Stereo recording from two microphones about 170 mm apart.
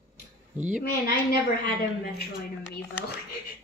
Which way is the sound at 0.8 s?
65° left (ahead or behind).